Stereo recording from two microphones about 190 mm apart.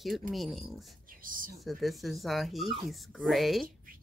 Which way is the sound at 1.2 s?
45° right (ahead or behind).